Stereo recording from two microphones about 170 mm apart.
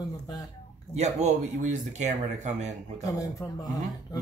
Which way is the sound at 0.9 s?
40° right (ahead or behind).